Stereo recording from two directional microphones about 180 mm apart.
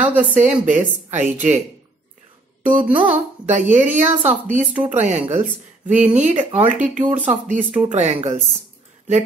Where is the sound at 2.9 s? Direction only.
10° right (ahead or behind).